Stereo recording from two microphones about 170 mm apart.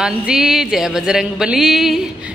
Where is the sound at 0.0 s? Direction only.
5° right (ahead or behind).